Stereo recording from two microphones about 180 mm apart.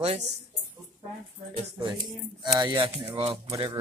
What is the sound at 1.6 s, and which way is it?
Speech, 30° right (ahead or behind).